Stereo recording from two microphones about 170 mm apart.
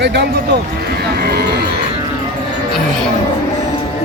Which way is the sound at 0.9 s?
70° right (ahead or behind).